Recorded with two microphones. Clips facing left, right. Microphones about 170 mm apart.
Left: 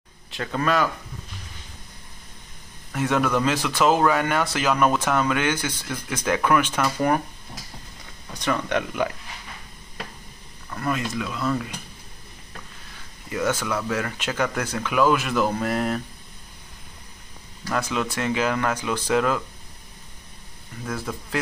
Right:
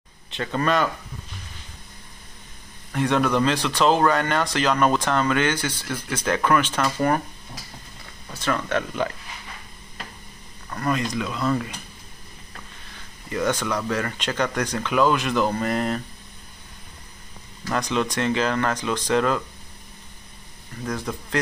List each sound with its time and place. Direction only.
0.3 s speech: centre (ahead or behind)
2.9 s speech: 5° left (ahead or behind)
8.3 s speech: 15° left (ahead or behind)
10.7 s speech: centre (ahead or behind)
13.3 s speech: 5° left (ahead or behind)
17.6 s speech: 5° left (ahead or behind)
20.8 s speech: centre (ahead or behind)